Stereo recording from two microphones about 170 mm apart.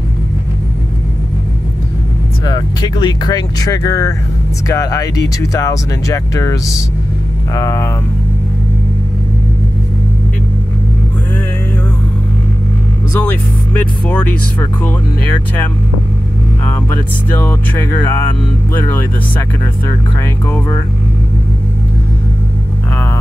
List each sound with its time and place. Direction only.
2.4 s speech: 25° left (ahead or behind)
13.2 s speech: 10° left (ahead or behind)
17.4 s speech: 10° left (ahead or behind)
20.4 s speech: 15° left (ahead or behind)